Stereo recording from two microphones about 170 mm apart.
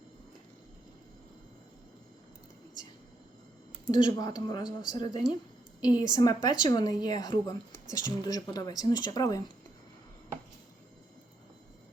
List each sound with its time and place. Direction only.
3.9 s a woman's voice: 25° left (ahead or behind)